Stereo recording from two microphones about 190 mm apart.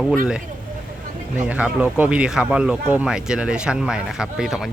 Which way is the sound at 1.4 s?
5° right (ahead or behind).